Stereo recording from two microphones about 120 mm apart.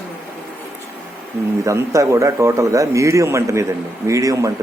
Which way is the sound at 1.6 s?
25° right (ahead or behind).